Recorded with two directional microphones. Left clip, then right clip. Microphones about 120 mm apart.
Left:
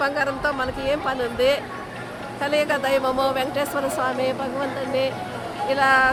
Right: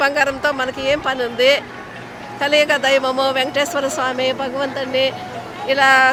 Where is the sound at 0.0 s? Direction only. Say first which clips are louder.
Right 6 dB; 35° right (ahead or behind).